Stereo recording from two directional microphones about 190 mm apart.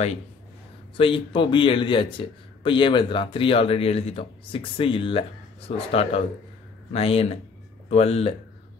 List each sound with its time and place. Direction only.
0.9 s speech: 25° left (ahead or behind)